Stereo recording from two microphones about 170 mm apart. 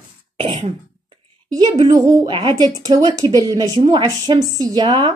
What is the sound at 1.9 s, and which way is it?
A woman's voice, 20° right (ahead or behind).